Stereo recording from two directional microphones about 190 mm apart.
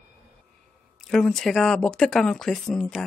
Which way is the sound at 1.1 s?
Centre (ahead or behind).